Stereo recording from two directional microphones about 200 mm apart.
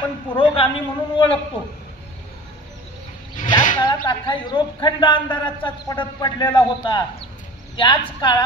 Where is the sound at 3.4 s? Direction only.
40° left (ahead or behind).